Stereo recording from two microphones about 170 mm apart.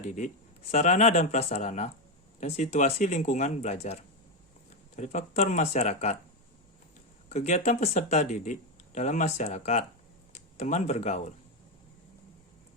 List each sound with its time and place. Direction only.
0.7 s speech: 40° left (ahead or behind)
7.3 s speech: 40° left (ahead or behind)